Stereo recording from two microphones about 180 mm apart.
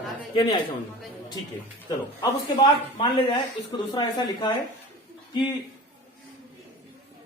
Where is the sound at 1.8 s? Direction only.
25° left (ahead or behind).